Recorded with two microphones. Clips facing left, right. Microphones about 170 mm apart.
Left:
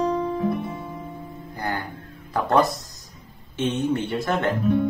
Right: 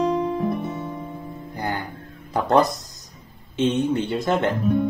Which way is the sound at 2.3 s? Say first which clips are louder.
Right 2 dB; 20° right (ahead or behind).